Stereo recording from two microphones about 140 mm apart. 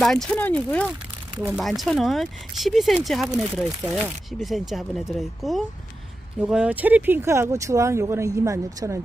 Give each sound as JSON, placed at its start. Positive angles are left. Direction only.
{"t": 0.0, "sound": "speech", "side_deg": 5}